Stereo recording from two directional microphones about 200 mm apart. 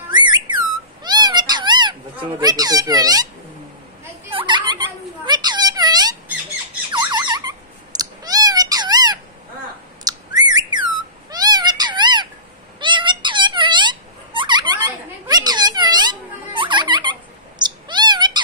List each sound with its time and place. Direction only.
0.1 s whistling: 20° right (ahead or behind)
1.0 s cat: 20° right (ahead or behind)
4.3 s turkey: 25° right (ahead or behind)
6.9 s squawk: 20° right (ahead or behind)
8.0 s cat: 20° right (ahead or behind)
10.0 s bird: 20° right (ahead or behind)
11.2 s cat: 20° right (ahead or behind)
12.8 s squeak: 25° right (ahead or behind)